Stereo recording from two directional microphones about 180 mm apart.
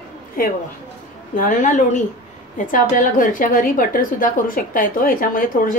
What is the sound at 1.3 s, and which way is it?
A woman's voice, 45° left (ahead or behind).